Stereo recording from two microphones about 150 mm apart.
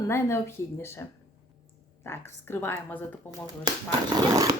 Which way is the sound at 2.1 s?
15° left (ahead or behind).